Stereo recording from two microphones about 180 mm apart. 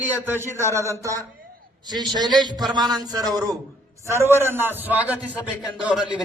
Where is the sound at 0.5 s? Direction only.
15° right (ahead or behind).